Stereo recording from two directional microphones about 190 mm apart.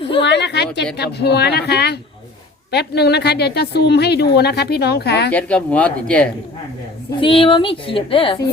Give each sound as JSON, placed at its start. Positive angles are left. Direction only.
{"t": 0.2, "sound": "a woman's voice", "side_deg": 65}
{"t": 5.3, "sound": "speech", "side_deg": 5}
{"t": 7.2, "sound": "a woman's voice", "side_deg": 25}